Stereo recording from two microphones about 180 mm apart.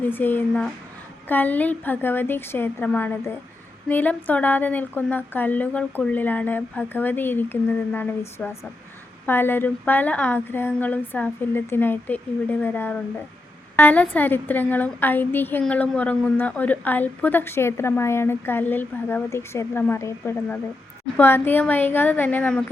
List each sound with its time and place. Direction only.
0.0 s a woman's voice: 10° left (ahead or behind)